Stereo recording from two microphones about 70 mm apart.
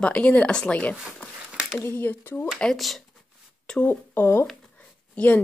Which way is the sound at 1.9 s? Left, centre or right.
Left.